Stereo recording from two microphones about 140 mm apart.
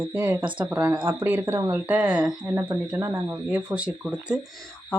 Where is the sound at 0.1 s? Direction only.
15° right (ahead or behind).